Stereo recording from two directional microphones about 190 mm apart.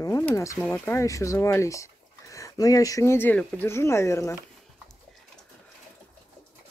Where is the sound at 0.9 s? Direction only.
15° left (ahead or behind).